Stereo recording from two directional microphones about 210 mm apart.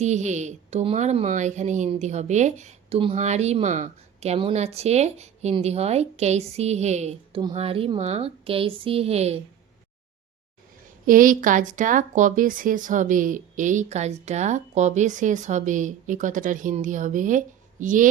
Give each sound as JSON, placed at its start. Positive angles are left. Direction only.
{"t": 0.0, "sound": "speech", "side_deg": -35}
{"t": 11.0, "sound": "speech", "side_deg": -40}